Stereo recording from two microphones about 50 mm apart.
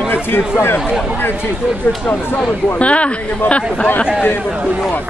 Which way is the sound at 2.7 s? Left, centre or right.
Left.